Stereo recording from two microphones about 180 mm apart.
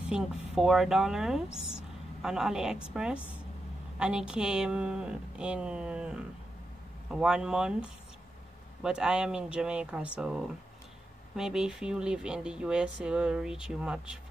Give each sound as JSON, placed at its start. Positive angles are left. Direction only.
{"t": 0.1, "sound": "speech", "side_deg": 0}